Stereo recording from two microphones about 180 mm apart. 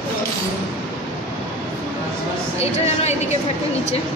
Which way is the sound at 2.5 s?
35° left (ahead or behind).